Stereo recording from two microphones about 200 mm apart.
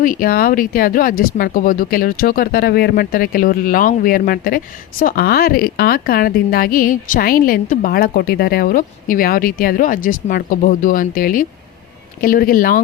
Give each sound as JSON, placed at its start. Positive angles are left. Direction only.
{"t": 0.0, "sound": "speech", "side_deg": 45}